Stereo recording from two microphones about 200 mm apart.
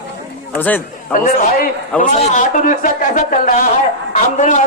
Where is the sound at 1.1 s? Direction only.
45° left (ahead or behind).